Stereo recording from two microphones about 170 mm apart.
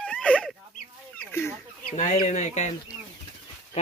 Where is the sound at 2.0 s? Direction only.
45° left (ahead or behind).